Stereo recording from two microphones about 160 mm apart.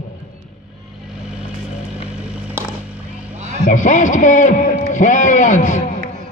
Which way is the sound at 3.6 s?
50° left (ahead or behind).